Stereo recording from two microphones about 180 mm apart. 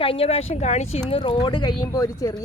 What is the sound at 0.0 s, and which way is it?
Speech, 30° left (ahead or behind).